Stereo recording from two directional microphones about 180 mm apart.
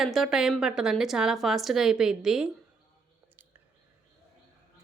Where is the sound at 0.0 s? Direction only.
Centre (ahead or behind).